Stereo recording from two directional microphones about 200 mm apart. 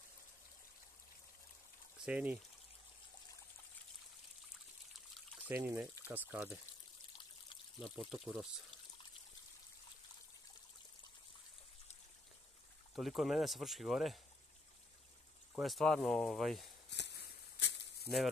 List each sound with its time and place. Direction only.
2.0 s speech: 5° right (ahead or behind)
5.5 s speech: 10° right (ahead or behind)
8.1 s speech: centre (ahead or behind)
12.9 s speech: centre (ahead or behind)
15.5 s speech: centre (ahead or behind)
16.9 s a sound: 55° left (ahead or behind)